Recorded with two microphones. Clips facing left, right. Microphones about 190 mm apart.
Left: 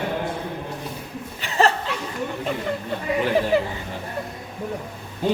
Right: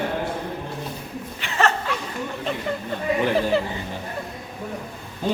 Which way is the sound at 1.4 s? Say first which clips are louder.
Left 2 dB; 35° left (ahead or behind).